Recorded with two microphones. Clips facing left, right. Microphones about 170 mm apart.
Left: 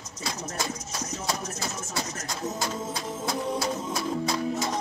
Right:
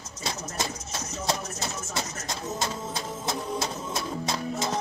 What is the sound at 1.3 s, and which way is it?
Music, 25° right (ahead or behind).